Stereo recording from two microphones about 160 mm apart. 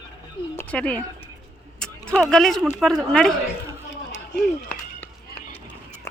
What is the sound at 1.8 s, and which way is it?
Speech, 5° left (ahead or behind).